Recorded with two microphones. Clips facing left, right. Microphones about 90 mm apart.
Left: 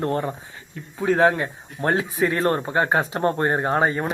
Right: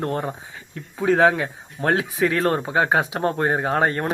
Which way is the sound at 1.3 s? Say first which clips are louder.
Right 1 dB; 85° right.